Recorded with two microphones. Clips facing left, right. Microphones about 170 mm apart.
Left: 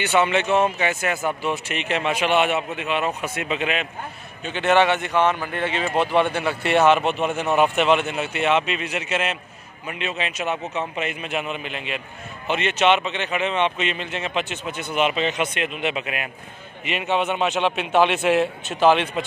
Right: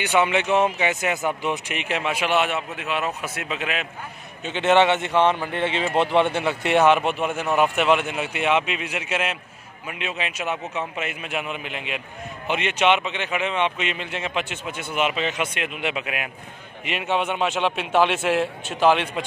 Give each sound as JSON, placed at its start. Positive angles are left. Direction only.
{"t": 0.0, "sound": "speech", "side_deg": -10}
{"t": 4.5, "sound": "a man's voice", "side_deg": -20}